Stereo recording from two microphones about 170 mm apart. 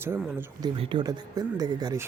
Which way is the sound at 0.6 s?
30° right (ahead or behind).